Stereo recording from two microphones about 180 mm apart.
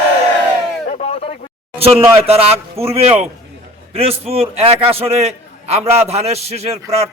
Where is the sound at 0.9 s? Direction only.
35° left (ahead or behind).